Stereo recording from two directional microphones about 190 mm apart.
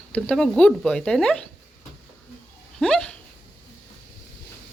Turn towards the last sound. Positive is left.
turn(degrees=5)  # may be behind; listen again after turning